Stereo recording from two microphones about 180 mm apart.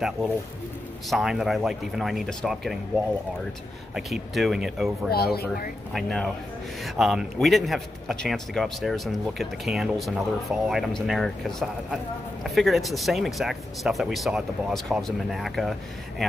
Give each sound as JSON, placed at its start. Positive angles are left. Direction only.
{"t": 1.1, "sound": "a man's voice", "side_deg": 0}
{"t": 3.9, "sound": "a man's voice", "side_deg": 0}
{"t": 5.1, "sound": "speech", "side_deg": 60}
{"t": 5.9, "sound": "a man's voice", "side_deg": 0}